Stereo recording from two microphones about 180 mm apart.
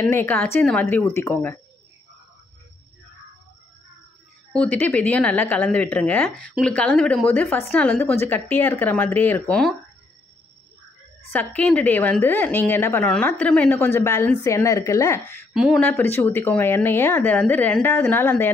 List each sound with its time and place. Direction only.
0.0 s a woman's voice: 15° left (ahead or behind)
4.5 s a woman's voice: 5° left (ahead or behind)
11.3 s a woman's voice: 10° left (ahead or behind)
15.5 s speech: 5° right (ahead or behind)
15.8 s a woman's voice: 10° left (ahead or behind)